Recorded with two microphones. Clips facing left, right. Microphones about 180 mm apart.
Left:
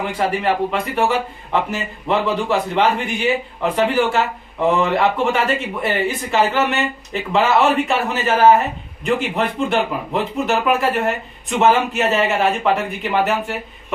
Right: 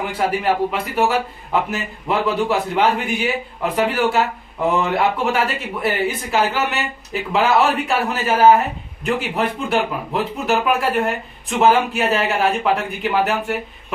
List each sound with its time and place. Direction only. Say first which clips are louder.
0.0 s speech: even; 5° right (ahead or behind)